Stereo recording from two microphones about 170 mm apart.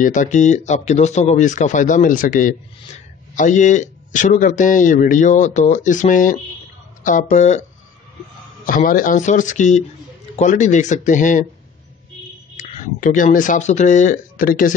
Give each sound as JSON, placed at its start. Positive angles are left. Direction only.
{"t": 0.0, "sound": "speech", "side_deg": 50}
{"t": 8.6, "sound": "speech", "side_deg": 55}
{"t": 12.5, "sound": "speech", "side_deg": 45}